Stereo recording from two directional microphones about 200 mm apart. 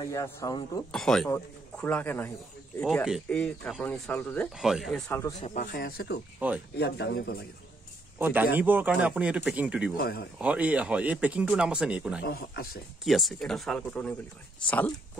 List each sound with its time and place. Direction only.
0.0 s speech: 15° left (ahead or behind)
0.9 s speech: centre (ahead or behind)
5.4 s speech: 40° left (ahead or behind)
5.7 s speech: 50° left (ahead or behind)
8.2 s speech: 10° right (ahead or behind)
9.9 s speech: 55° left (ahead or behind)
10.4 s speech: 5° right (ahead or behind)
12.2 s speech: 50° left (ahead or behind)
13.0 s speech: centre (ahead or behind)